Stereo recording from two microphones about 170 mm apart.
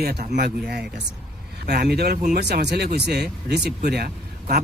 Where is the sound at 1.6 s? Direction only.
70° right (ahead or behind).